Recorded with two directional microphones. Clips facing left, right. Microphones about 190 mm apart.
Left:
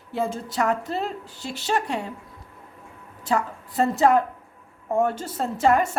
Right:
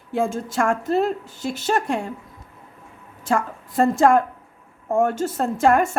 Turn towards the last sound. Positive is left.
turn(degrees=-50)  # may be behind; listen again after turning